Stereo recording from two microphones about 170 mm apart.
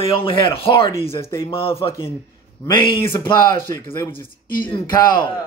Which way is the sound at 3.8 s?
15° left (ahead or behind).